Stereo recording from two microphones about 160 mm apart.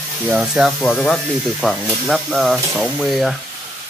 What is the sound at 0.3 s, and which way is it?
Speech, centre (ahead or behind).